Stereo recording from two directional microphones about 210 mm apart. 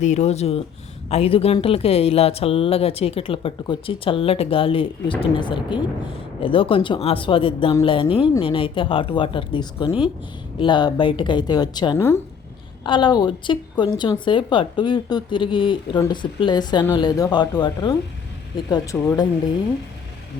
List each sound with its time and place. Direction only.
0.0 s a woman's voice: 35° left (ahead or behind); by 12.2 s 10° left (ahead or behind)
12.8 s a woman's voice: 20° left (ahead or behind)
18.9 s speech: 5° left (ahead or behind)